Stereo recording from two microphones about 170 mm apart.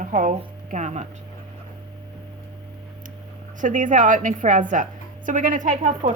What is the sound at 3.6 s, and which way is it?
A woman's voice, 50° right (ahead or behind).